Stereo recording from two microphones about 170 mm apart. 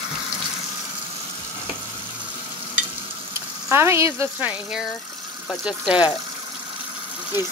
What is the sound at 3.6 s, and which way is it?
Speech, 15° right (ahead or behind).